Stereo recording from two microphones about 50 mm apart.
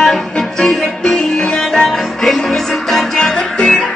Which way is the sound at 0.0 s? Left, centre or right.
Centre.